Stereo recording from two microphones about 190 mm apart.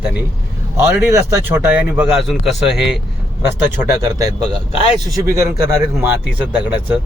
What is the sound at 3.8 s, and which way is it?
A man's voice, 15° right (ahead or behind).